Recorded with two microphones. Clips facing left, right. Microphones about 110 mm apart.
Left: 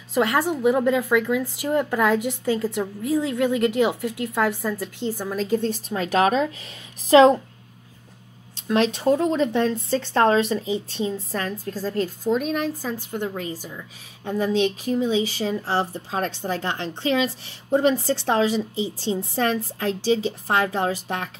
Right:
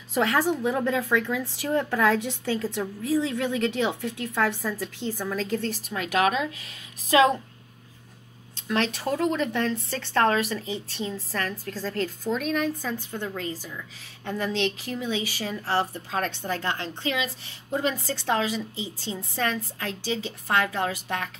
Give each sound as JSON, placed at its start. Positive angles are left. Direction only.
{"t": 0.7, "sound": "a woman's voice", "side_deg": 15}
{"t": 5.1, "sound": "a woman's voice", "side_deg": 15}
{"t": 5.9, "sound": "a woman's voice", "side_deg": 35}
{"t": 8.6, "sound": "a woman's voice", "side_deg": 20}
{"t": 12.3, "sound": "a woman's voice", "side_deg": 30}
{"t": 13.1, "sound": "a woman's voice", "side_deg": 15}